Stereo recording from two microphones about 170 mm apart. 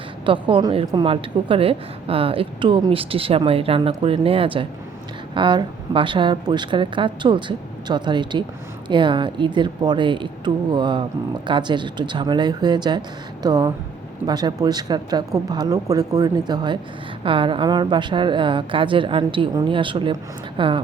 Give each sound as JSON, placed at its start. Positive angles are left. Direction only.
{"t": 0.3, "sound": "a woman's voice", "side_deg": -30}